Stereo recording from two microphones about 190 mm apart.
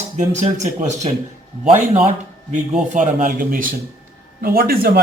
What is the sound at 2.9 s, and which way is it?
Speech, 40° right (ahead or behind).